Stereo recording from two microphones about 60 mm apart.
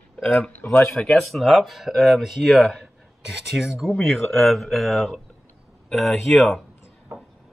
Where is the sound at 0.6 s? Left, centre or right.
Left.